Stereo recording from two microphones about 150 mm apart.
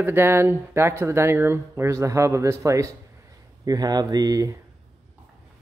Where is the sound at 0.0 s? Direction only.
15° right (ahead or behind).